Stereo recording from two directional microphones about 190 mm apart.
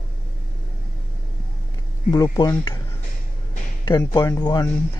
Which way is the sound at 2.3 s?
20° left (ahead or behind).